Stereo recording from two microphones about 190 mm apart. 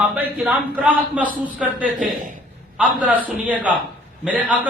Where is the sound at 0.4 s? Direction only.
10° right (ahead or behind).